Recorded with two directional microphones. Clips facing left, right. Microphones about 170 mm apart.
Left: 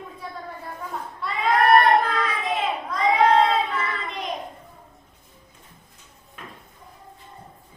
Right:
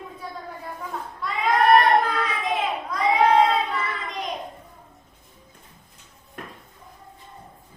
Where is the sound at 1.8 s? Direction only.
5° right (ahead or behind).